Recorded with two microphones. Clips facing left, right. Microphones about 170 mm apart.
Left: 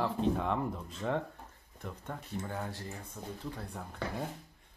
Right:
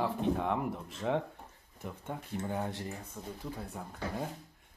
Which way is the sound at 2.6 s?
20° right (ahead or behind).